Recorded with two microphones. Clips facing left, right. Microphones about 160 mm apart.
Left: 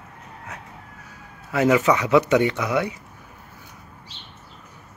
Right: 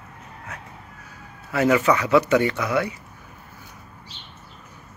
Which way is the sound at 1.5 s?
15° left (ahead or behind).